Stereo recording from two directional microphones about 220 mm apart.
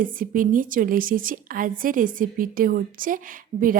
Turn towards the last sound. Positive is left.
turn(degrees=-40)  # may be behind; listen again after turning